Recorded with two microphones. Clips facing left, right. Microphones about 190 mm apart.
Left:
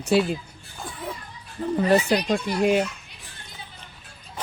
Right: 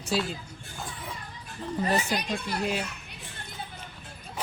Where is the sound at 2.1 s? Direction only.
55° left (ahead or behind).